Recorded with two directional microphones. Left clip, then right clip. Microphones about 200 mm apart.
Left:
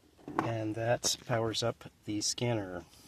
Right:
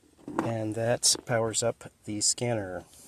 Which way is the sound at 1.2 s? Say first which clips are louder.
Right 5 dB; 5° right (ahead or behind).